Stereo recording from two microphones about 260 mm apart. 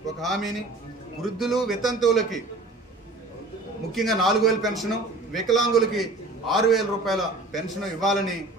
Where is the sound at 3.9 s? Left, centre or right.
Centre.